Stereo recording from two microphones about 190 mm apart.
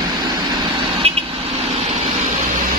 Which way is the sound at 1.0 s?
30° right (ahead or behind).